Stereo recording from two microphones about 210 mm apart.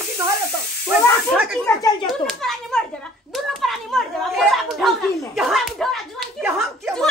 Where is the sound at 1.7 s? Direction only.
15° left (ahead or behind).